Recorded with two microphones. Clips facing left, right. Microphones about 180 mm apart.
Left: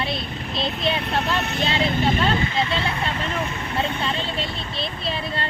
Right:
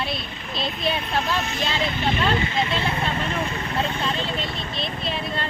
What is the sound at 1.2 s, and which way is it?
Speech, 65° left (ahead or behind).